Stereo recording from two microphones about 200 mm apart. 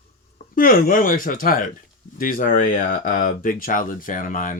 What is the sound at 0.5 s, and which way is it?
Speech, 45° left (ahead or behind).